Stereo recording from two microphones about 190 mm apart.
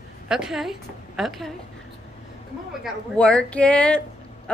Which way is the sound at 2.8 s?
5° left (ahead or behind).